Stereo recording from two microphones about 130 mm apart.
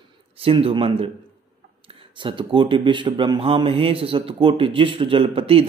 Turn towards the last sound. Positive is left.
turn(degrees=-45)  # may be behind; listen again after turning